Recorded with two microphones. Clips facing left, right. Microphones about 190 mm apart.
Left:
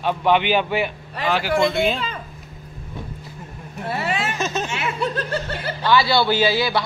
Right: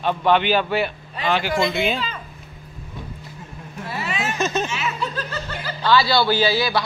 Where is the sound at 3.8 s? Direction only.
60° left (ahead or behind).